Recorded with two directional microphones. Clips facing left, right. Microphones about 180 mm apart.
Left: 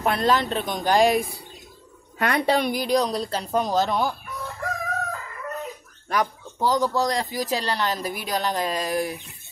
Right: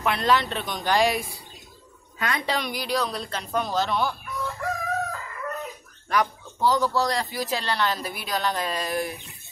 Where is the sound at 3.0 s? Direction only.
35° left (ahead or behind).